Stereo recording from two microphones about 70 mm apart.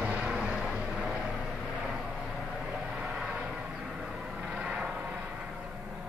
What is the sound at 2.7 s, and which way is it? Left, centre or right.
Vehicle, centre.